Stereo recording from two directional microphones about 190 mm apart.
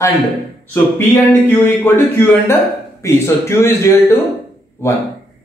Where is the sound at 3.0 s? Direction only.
15° left (ahead or behind).